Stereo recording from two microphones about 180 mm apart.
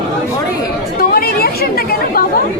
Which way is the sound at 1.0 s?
60° left (ahead or behind).